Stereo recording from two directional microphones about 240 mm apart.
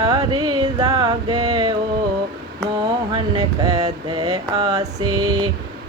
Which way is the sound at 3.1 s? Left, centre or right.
Centre.